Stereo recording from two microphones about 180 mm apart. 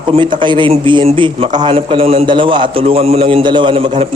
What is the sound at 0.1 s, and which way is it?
A man's voice, 25° right (ahead or behind).